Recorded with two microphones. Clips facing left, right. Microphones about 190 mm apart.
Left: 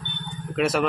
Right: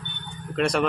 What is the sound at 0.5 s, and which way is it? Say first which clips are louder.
Speech: left 1 dB; 5° left (ahead or behind).